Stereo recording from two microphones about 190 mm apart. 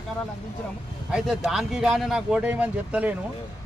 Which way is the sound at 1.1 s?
5° right (ahead or behind).